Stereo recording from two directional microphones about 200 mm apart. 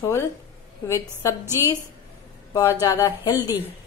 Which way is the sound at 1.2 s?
15° left (ahead or behind).